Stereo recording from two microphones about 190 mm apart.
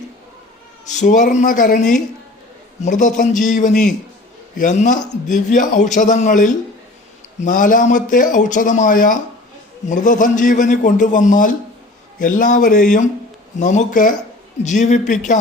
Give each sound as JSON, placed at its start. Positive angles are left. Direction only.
{"t": 0.9, "sound": "a man's voice", "side_deg": 40}